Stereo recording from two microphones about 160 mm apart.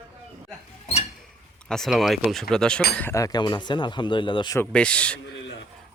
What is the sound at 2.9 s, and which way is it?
Speech, 15° left (ahead or behind).